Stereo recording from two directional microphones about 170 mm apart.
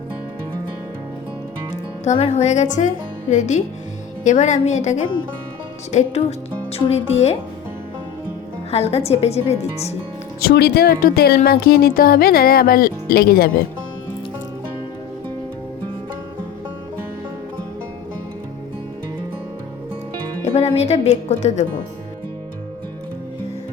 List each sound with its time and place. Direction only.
2.0 s a woman's voice: 40° left (ahead or behind)
8.7 s a woman's voice: 35° left (ahead or behind)
10.4 s speech: 75° left (ahead or behind)
11.3 s music: 65° left (ahead or behind)
20.4 s speech: 40° left (ahead or behind)